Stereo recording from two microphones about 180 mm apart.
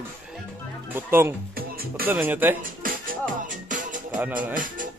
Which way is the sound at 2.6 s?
50° right (ahead or behind).